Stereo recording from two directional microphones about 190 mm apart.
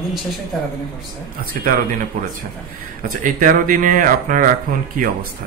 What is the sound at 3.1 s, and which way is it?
Speech, 45° right (ahead or behind).